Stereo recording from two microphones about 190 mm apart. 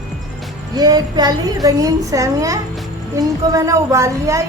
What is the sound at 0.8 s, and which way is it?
A woman's voice, 20° right (ahead or behind).